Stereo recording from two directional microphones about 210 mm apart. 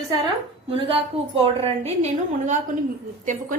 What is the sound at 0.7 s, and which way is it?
A woman's voice, 25° right (ahead or behind).